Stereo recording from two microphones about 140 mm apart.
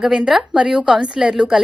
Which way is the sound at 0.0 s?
Centre (ahead or behind).